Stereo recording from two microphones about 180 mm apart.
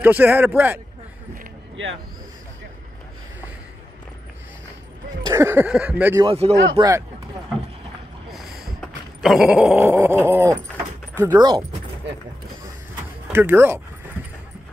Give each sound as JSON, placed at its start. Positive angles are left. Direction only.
{"t": 0.0, "sound": "speech", "side_deg": -10}
{"t": 5.2, "sound": "speech", "side_deg": -20}
{"t": 6.2, "sound": "speech", "side_deg": -35}
{"t": 8.8, "sound": "a sound", "side_deg": 0}
{"t": 11.1, "sound": "speech", "side_deg": -25}
{"t": 13.3, "sound": "speech", "side_deg": -10}